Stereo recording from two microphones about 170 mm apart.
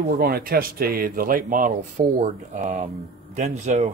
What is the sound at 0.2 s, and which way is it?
Speech, 60° right (ahead or behind).